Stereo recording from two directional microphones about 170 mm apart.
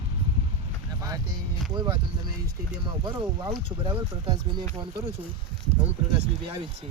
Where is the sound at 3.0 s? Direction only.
25° right (ahead or behind).